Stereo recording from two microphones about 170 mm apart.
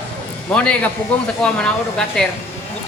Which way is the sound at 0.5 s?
5° left (ahead or behind).